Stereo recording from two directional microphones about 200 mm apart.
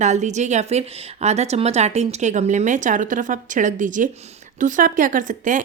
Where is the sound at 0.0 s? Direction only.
35° right (ahead or behind).